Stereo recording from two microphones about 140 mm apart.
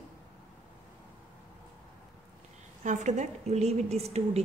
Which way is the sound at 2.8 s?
60° right (ahead or behind).